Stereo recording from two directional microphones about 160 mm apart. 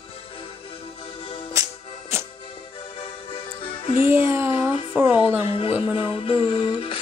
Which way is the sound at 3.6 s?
35° left (ahead or behind).